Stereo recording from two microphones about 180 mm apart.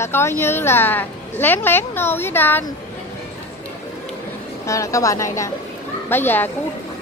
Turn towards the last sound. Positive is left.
turn(degrees=10)  # may be behind; listen again after turning